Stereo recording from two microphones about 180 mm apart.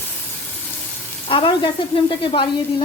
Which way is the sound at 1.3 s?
25° left (ahead or behind).